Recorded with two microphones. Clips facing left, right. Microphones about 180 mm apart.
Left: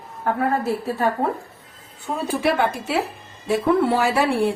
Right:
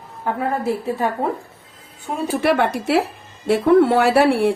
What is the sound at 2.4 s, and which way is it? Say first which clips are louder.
Speech: right 4 dB; 70° right (ahead or behind).